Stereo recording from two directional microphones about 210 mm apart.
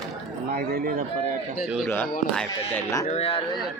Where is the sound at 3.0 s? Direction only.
30° left (ahead or behind).